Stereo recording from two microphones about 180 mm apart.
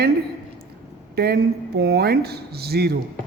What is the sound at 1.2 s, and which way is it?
A man's voice, 60° right (ahead or behind).